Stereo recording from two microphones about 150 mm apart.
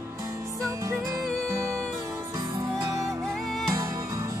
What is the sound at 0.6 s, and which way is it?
Music, 20° right (ahead or behind).